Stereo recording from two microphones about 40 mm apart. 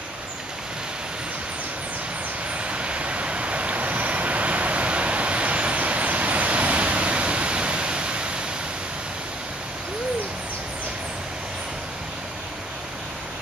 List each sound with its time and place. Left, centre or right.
2.5 s vehicle: right